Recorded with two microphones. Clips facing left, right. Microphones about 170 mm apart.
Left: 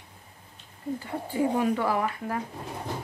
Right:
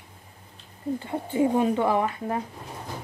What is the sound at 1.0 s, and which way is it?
A woman's voice, 25° right (ahead or behind).